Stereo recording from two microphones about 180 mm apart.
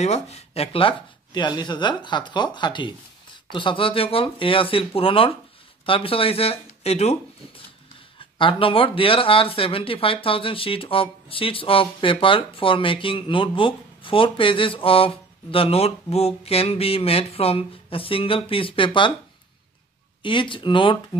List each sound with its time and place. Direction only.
0.0 s speech: 35° left (ahead or behind)
20.2 s speech: 25° left (ahead or behind)